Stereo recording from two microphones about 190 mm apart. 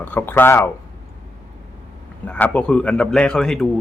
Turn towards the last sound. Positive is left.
turn(degrees=5)  # may be behind; listen again after turning